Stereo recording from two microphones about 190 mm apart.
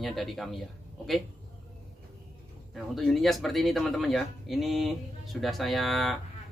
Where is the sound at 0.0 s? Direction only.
Centre (ahead or behind).